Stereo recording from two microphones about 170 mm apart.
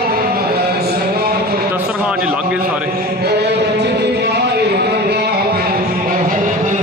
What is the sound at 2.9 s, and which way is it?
Music, 65° right (ahead or behind).